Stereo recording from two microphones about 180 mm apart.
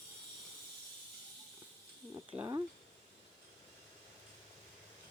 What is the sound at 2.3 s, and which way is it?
Speech, 20° right (ahead or behind).